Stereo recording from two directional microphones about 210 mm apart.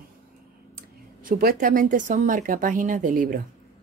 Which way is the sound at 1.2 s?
45° right (ahead or behind).